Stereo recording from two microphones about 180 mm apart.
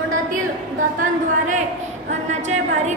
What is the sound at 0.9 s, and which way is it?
A woman's voice, 45° right (ahead or behind).